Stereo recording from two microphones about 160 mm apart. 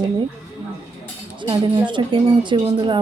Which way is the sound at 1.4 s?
30° right (ahead or behind).